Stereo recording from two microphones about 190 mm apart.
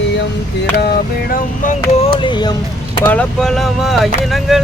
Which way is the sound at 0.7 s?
50° left (ahead or behind).